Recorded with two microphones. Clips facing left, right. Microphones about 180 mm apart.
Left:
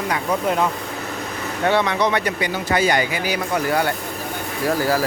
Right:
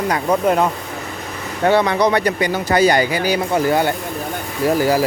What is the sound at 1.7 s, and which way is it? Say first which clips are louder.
Speech: right 4 dB; 40° right (ahead or behind).